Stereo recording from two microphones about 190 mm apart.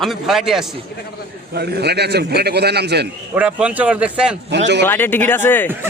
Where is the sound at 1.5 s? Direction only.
60° right (ahead or behind).